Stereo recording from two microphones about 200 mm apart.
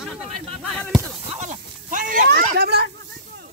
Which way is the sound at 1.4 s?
40° right (ahead or behind).